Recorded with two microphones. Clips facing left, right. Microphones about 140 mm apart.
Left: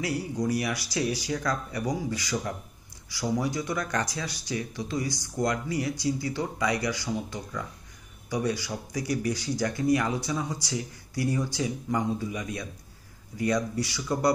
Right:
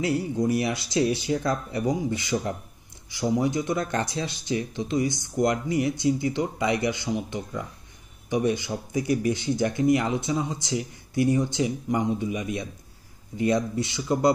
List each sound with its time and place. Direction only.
0.0 s speech: 25° right (ahead or behind)